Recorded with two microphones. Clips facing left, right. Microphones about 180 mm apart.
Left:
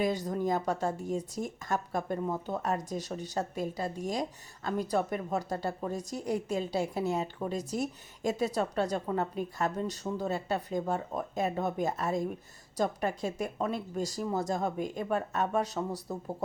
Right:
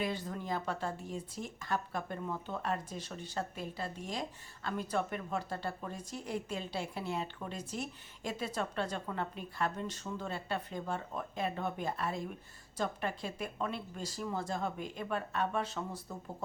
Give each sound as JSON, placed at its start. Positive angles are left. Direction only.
{"t": 0.0, "sound": "speech", "side_deg": 40}